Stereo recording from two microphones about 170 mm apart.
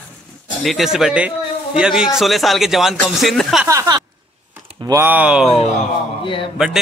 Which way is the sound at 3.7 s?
20° right (ahead or behind).